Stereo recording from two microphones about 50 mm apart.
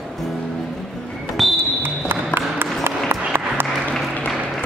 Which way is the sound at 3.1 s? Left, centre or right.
Right.